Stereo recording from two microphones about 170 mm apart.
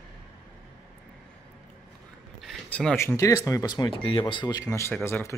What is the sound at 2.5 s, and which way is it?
Speech, 5° left (ahead or behind).